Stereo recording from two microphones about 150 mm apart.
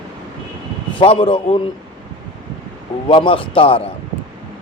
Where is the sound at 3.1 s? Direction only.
35° left (ahead or behind).